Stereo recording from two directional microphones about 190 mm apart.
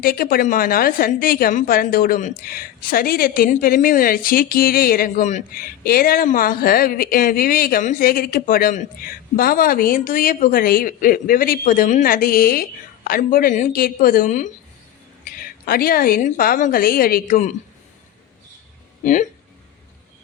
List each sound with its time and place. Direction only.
0.0 s a woman's voice: 50° left (ahead or behind)
19.0 s speech: 40° left (ahead or behind)